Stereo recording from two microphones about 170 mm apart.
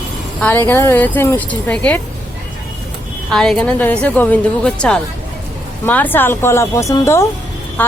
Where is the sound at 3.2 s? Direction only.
5° left (ahead or behind).